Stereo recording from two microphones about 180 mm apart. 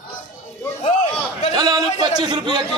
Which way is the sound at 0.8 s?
40° left (ahead or behind).